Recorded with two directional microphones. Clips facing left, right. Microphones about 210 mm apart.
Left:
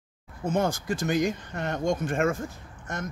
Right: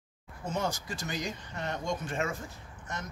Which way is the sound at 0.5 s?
50° left (ahead or behind).